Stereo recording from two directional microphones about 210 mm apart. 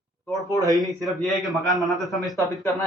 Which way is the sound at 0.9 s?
Centre (ahead or behind).